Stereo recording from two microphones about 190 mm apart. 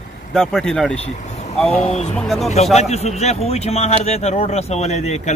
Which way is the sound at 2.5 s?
35° left (ahead or behind).